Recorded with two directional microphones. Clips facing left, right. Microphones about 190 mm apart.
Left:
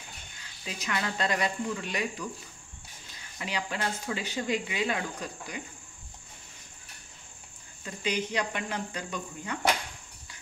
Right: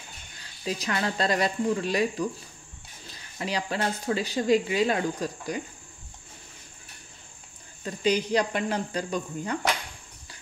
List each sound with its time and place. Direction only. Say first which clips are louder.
0.4 s speech: right 9 dB; 35° right (ahead or behind)
7.8 s speech: right 6 dB; 35° right (ahead or behind)